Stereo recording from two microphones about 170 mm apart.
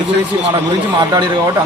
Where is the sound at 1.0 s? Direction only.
25° right (ahead or behind).